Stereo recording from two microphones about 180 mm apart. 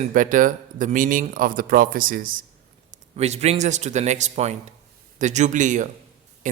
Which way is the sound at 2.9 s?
35° right (ahead or behind).